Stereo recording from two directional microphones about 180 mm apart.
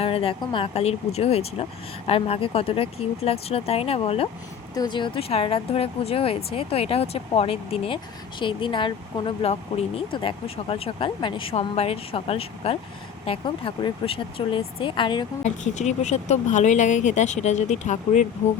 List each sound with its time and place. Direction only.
0.0 s speech: 30° left (ahead or behind)
4.7 s speech: 25° left (ahead or behind)
15.4 s speech: 40° left (ahead or behind)